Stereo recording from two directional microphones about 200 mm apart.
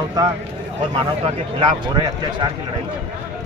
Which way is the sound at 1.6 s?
25° right (ahead or behind).